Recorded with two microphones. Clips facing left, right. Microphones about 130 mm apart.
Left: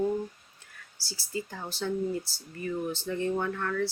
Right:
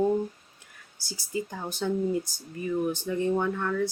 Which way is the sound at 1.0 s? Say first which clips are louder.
Right 3 dB; 15° right (ahead or behind).